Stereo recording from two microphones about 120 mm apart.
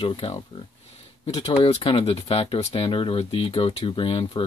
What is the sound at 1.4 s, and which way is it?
Speech, 50° left (ahead or behind).